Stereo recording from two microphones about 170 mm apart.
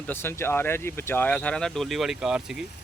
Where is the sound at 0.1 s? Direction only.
15° left (ahead or behind).